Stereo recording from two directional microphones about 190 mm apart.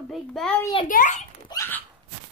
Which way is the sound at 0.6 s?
25° left (ahead or behind).